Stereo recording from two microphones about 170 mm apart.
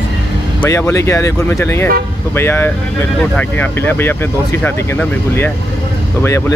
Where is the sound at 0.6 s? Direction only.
15° left (ahead or behind).